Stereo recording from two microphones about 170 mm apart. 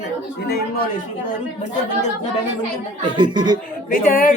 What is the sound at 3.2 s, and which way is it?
Speech, 25° right (ahead or behind).